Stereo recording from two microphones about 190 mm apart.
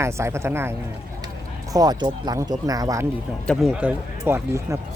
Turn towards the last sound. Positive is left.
turn(degrees=-15)  # may be behind; listen again after turning